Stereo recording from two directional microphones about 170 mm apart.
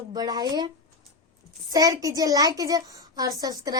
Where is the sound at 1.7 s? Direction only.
20° right (ahead or behind).